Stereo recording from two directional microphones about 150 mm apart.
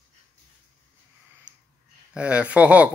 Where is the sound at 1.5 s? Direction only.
10° right (ahead or behind).